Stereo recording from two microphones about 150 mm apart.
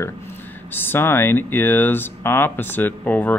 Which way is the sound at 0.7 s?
15° left (ahead or behind).